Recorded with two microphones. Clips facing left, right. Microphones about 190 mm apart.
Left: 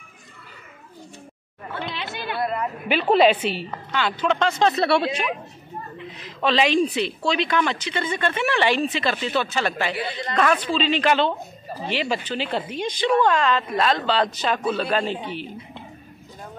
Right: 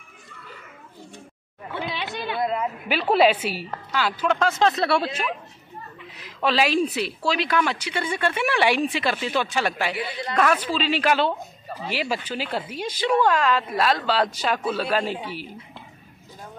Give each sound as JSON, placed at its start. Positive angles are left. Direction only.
{"t": 1.8, "sound": "chatter", "side_deg": -15}
{"t": 2.9, "sound": "a woman's voice", "side_deg": -5}